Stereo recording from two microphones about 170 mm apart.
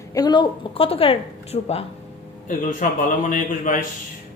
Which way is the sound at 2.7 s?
50° left (ahead or behind).